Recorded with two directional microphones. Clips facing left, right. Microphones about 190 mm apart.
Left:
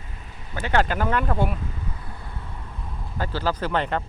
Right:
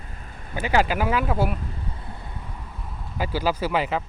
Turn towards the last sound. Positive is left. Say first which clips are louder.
# right 1 dB
turn(degrees=-5)  # may be behind; listen again after turning